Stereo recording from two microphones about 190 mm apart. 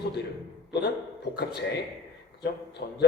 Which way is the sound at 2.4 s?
60° left (ahead or behind).